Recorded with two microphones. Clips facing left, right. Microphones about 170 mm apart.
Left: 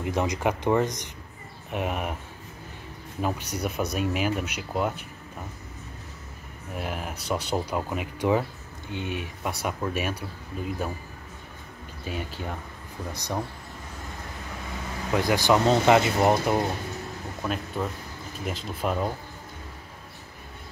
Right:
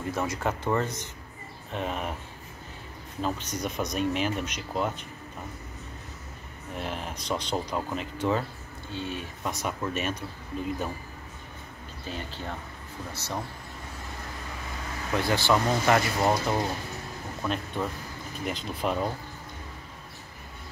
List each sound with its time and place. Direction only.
0.0 s speech: 15° left (ahead or behind)
3.2 s speech: 10° left (ahead or behind)
6.7 s speech: 10° left (ahead or behind)
12.1 s speech: 10° left (ahead or behind)
15.1 s speech: 15° left (ahead or behind)
17.4 s speech: 5° left (ahead or behind)